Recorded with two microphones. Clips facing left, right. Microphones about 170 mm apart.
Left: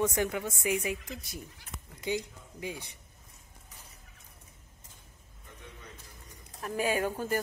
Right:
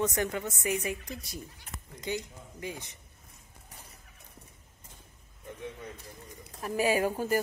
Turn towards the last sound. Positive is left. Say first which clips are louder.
# right 3 dB
turn(degrees=-10)  # may be behind; listen again after turning